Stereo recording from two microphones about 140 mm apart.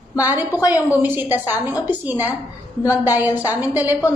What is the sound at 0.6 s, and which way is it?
Speech, 25° left (ahead or behind).